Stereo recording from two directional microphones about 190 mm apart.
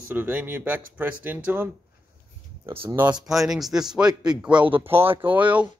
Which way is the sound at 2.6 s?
25° right (ahead or behind).